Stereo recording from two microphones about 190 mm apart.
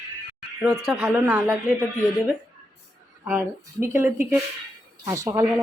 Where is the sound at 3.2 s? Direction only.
15° right (ahead or behind).